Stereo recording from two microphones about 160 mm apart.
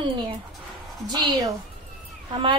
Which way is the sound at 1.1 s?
25° right (ahead or behind).